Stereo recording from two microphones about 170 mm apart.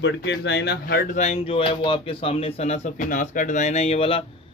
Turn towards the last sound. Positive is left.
turn(degrees=35)  # may be behind; listen again after turning